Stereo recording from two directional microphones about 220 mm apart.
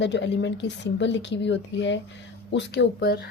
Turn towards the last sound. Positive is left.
turn(degrees=50)  # may be behind; listen again after turning